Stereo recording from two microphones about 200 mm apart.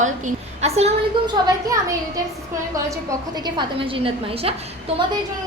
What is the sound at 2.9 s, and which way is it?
A woman's voice, 20° right (ahead or behind).